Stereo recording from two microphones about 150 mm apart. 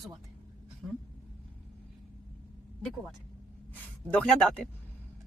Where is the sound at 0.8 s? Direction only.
Centre (ahead or behind).